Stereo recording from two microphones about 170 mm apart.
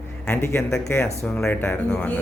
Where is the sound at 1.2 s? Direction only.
5° left (ahead or behind).